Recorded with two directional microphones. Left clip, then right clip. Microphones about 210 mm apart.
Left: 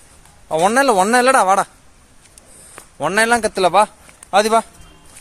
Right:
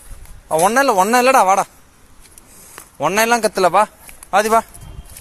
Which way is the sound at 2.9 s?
Centre (ahead or behind).